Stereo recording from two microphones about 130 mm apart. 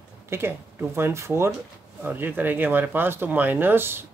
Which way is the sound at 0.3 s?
20° right (ahead or behind).